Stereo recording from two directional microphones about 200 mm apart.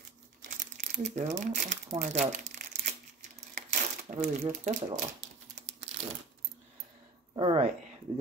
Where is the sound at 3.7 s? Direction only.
50° right (ahead or behind).